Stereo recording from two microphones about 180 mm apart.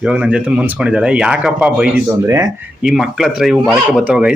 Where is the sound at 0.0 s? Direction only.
5° right (ahead or behind).